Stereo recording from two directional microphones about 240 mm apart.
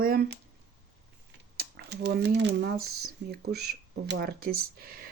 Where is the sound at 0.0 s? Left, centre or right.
Right.